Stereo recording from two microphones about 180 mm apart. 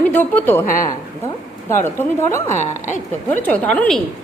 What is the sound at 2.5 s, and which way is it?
Speech, 40° left (ahead or behind).